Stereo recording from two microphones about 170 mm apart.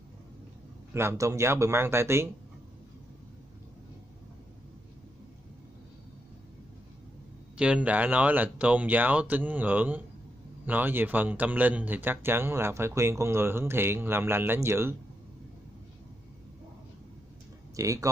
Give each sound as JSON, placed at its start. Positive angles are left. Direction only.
{"t": 0.9, "sound": "speech", "side_deg": -15}
{"t": 7.5, "sound": "speech", "side_deg": -5}
{"t": 17.7, "sound": "speech", "side_deg": -20}